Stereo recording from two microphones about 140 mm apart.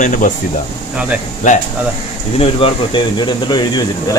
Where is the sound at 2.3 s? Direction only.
40° left (ahead or behind).